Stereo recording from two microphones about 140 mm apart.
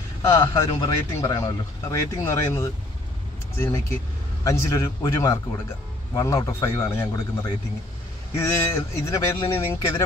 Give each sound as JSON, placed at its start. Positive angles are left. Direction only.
{"t": 0.2, "sound": "speech", "side_deg": 20}